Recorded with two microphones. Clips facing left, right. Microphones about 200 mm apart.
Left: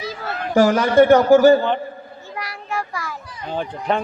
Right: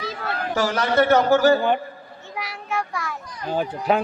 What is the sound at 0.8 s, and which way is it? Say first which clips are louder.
Speech: left 3 dB; 15° left (ahead or behind).